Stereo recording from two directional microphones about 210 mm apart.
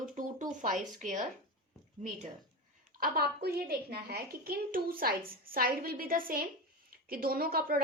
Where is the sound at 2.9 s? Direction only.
45° right (ahead or behind).